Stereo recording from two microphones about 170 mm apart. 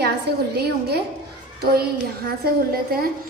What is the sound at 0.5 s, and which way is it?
Child singing, 70° right (ahead or behind).